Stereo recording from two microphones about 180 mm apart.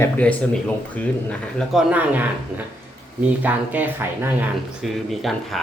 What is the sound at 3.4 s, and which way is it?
Speech, 10° right (ahead or behind).